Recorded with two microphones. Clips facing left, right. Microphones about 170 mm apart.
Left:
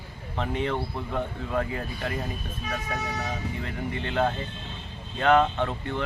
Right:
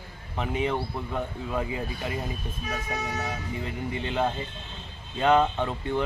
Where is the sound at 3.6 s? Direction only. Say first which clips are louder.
Even; 20° right (ahead or behind).